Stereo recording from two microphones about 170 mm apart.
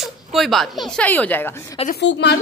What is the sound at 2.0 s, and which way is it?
Speech, 85° left.